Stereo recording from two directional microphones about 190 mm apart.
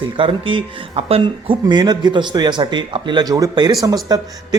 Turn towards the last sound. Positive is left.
turn(degrees=-20)  # may be behind; listen again after turning